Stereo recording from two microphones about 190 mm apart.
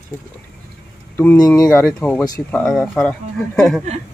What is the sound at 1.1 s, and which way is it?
Speech, 15° left (ahead or behind).